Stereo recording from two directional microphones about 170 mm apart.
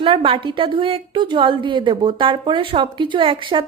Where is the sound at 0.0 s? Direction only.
30° right (ahead or behind).